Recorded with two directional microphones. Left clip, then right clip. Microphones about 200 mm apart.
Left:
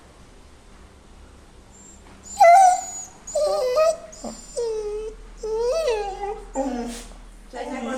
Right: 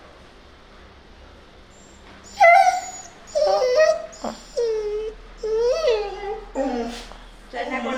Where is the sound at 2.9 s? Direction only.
40° left (ahead or behind).